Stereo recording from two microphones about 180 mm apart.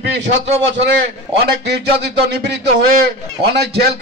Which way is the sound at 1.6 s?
75° right (ahead or behind).